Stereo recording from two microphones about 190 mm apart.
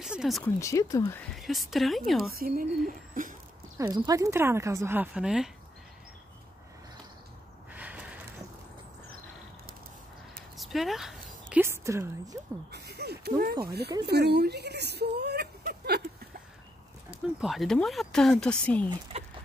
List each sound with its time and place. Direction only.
0.0 s speech: 5° right (ahead or behind)
0.6 s speech: 15° left (ahead or behind)
1.2 s speech: centre (ahead or behind)
2.3 s speech: 50° right (ahead or behind)
2.9 s a sound: 45° right (ahead or behind)
3.7 s speech: 20° right (ahead or behind)
7.7 s a sound: 10° right (ahead or behind)
10.6 s speech: centre (ahead or behind)
11.5 s a woman's voice: 15° right (ahead or behind)
12.7 s speech: 60° right (ahead or behind)
17.4 s speech: centre (ahead or behind)